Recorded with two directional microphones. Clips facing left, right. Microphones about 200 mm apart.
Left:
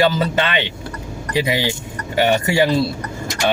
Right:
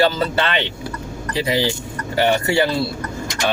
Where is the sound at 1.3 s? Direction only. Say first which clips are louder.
Even; 15° left (ahead or behind).